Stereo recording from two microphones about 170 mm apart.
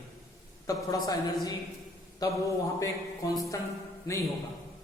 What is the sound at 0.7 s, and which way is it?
A man's voice, 20° left (ahead or behind).